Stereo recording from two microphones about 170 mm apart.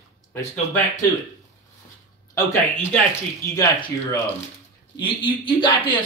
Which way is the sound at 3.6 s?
30° left (ahead or behind).